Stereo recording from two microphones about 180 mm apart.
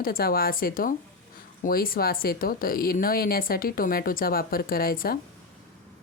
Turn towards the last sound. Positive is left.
turn(degrees=55)  # may be behind; listen again after turning